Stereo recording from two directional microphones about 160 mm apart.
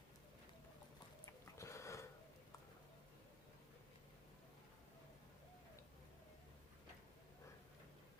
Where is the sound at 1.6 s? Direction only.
20° left (ahead or behind).